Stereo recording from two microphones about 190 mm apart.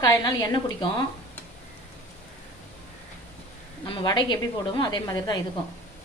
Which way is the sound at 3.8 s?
25° left (ahead or behind).